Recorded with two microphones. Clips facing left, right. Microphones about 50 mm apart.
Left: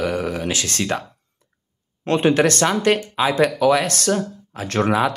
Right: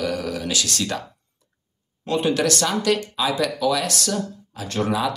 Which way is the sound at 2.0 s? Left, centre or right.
Left.